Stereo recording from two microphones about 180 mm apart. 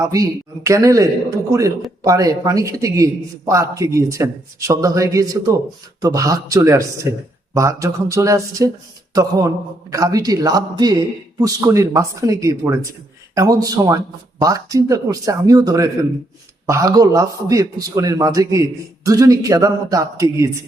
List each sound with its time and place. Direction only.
0.0 s a man's voice: 20° right (ahead or behind)
9.9 s a man's voice: 20° right (ahead or behind)